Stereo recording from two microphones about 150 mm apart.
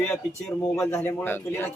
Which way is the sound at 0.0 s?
15° left (ahead or behind).